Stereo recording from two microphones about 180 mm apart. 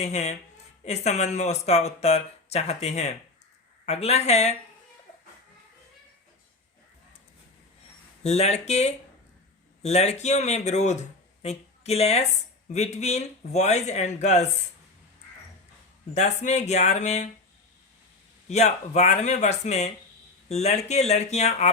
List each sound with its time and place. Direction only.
0.0 s speech: 40° left (ahead or behind)
8.2 s speech: 35° left (ahead or behind)
16.1 s speech: 40° left (ahead or behind)
18.4 s speech: 40° left (ahead or behind)